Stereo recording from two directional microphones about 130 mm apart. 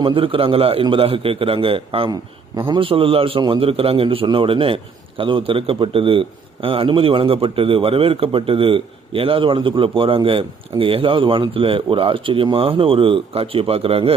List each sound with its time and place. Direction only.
0.0 s a man's voice: 45° right (ahead or behind)